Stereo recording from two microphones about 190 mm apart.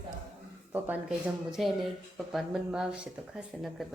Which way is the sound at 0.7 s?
5° right (ahead or behind).